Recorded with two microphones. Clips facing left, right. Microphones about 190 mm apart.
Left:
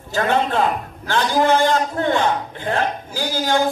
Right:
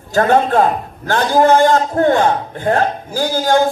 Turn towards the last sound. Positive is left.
turn(degrees=-45)  # may be behind; listen again after turning